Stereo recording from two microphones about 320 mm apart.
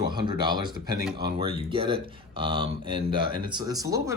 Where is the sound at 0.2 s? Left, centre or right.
Centre.